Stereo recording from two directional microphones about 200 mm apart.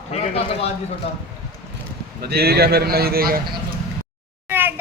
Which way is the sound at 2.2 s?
50° right (ahead or behind).